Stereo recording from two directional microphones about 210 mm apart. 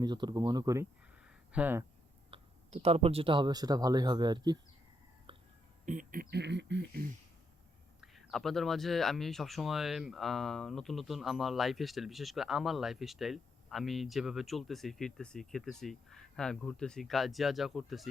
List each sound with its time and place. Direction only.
0.0 s speech: 20° right (ahead or behind)
2.3 s speech: 30° right (ahead or behind)
5.8 s speech: 35° right (ahead or behind); by 7.0 s 55° right (ahead or behind)
8.0 s speech: centre (ahead or behind)